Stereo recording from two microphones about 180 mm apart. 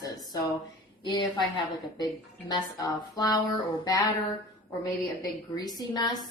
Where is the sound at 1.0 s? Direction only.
25° left (ahead or behind).